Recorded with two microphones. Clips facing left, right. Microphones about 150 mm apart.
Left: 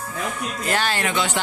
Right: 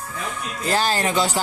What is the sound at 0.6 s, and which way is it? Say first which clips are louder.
Speech: right 3 dB; 35° right (ahead or behind).